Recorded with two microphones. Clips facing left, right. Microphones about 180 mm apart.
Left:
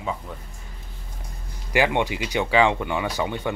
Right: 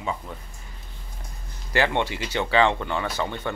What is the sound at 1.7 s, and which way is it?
Speech, 15° left (ahead or behind).